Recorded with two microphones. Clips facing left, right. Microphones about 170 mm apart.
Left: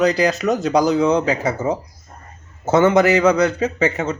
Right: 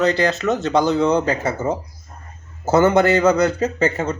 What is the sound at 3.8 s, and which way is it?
Speech, 30° right (ahead or behind).